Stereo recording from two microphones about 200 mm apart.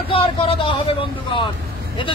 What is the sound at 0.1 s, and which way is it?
Speech, 25° left (ahead or behind).